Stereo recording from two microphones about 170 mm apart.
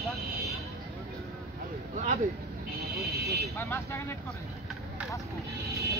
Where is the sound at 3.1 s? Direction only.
65° right (ahead or behind).